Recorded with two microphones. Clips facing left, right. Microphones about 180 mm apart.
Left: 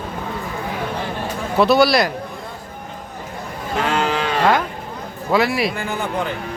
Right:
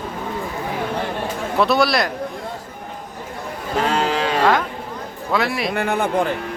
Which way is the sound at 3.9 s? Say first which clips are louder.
Even; 35° right (ahead or behind).